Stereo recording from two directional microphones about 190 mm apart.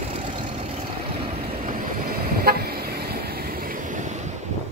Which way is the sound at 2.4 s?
55° right (ahead or behind).